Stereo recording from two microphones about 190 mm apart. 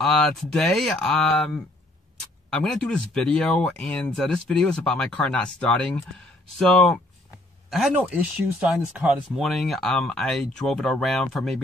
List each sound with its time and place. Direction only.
0.0 s speech: centre (ahead or behind)